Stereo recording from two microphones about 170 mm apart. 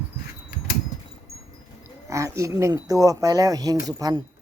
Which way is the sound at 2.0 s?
20° right (ahead or behind).